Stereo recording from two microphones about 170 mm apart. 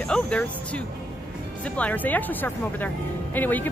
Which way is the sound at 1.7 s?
10° left (ahead or behind).